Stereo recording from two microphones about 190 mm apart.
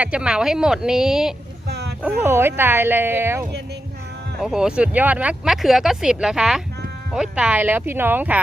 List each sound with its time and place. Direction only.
0.0 s speech: 5° right (ahead or behind)
1.6 s a sound: 55° right (ahead or behind)
2.0 s speech: 10° right (ahead or behind)